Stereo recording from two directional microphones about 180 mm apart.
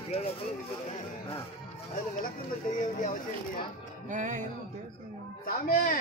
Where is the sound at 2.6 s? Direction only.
50° left (ahead or behind).